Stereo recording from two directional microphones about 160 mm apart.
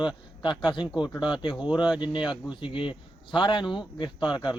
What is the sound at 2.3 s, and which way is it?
Speech, 30° left (ahead or behind).